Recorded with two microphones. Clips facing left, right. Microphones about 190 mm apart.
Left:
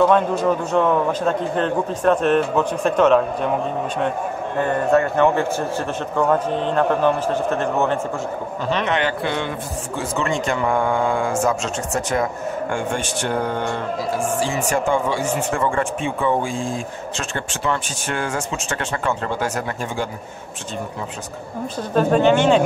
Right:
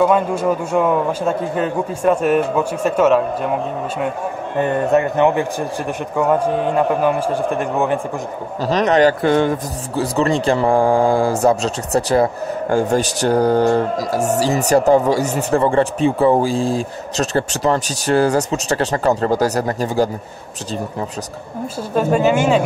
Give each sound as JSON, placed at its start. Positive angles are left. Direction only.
{"t": 0.0, "sound": "a man's voice", "side_deg": -10}
{"t": 4.6, "sound": "a man's voice", "side_deg": -15}
{"t": 8.6, "sound": "a man's voice", "side_deg": -40}
{"t": 21.9, "sound": "a man's voice", "side_deg": -5}